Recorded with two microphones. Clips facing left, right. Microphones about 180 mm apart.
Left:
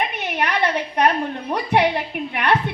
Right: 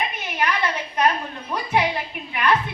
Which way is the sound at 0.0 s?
65° left (ahead or behind).